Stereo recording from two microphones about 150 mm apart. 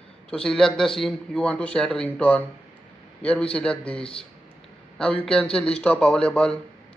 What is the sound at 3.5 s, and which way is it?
A man's voice, 5° left (ahead or behind).